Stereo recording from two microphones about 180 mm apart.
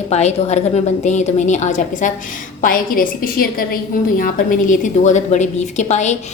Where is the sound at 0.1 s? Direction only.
35° left (ahead or behind).